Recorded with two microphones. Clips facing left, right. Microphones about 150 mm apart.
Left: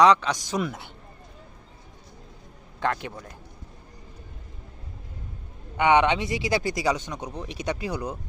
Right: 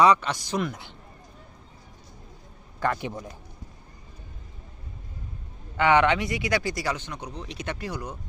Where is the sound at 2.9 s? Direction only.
20° right (ahead or behind).